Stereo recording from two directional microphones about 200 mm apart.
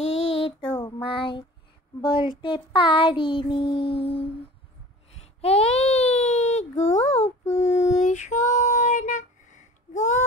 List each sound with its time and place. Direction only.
0.2 s child singing: 25° left (ahead or behind)
5.4 s baby cry: 30° left (ahead or behind)
6.8 s female singing: 35° left (ahead or behind)